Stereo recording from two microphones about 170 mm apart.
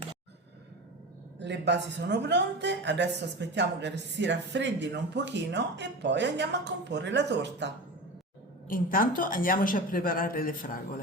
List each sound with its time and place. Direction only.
1.4 s speech: 90° right
8.6 s a woman's voice: 55° left (ahead or behind)